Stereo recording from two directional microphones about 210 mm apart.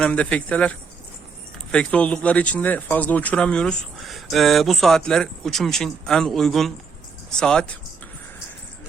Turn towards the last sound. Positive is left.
turn(degrees=5)  # may be behind; listen again after turning